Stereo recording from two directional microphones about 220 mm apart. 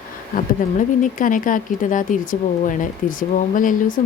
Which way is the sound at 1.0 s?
35° left (ahead or behind).